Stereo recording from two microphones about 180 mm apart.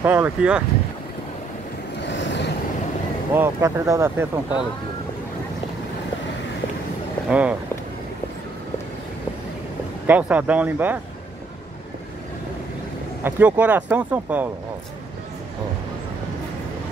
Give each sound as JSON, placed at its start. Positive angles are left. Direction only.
{"t": 0.0, "sound": "speech", "side_deg": -10}
{"t": 2.0, "sound": "vehicle", "side_deg": 90}
{"t": 3.3, "sound": "speech", "side_deg": -15}
{"t": 7.2, "sound": "speech", "side_deg": -5}
{"t": 10.0, "sound": "speech", "side_deg": -10}
{"t": 13.2, "sound": "speech", "side_deg": -10}